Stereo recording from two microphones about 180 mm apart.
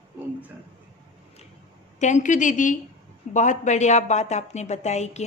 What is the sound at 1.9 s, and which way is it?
A woman's voice, 40° left (ahead or behind).